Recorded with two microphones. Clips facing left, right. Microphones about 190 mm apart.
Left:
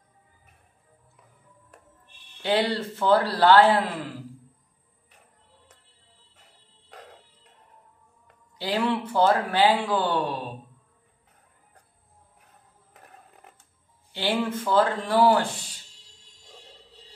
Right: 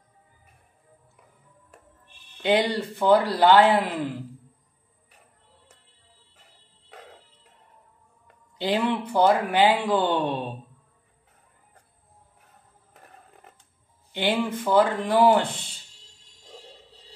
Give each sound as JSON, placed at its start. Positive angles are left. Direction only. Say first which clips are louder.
{"t": 2.4, "sound": "speech", "louder": "right 2 dB", "side_deg": -15}
{"t": 8.5, "sound": "a man's voice", "louder": "right 1 dB", "side_deg": -20}
{"t": 14.1, "sound": "speech", "louder": "right 1 dB", "side_deg": -20}